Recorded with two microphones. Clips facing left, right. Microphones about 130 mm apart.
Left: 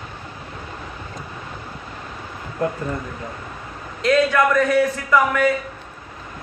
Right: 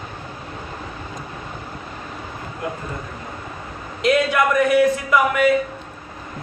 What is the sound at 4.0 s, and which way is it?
Mantra, 15° right (ahead or behind).